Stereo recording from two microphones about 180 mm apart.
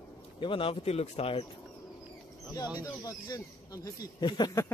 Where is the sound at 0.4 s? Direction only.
30° left (ahead or behind).